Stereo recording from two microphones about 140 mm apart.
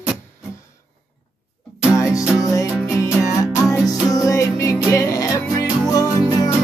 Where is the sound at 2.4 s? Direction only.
25° left (ahead or behind).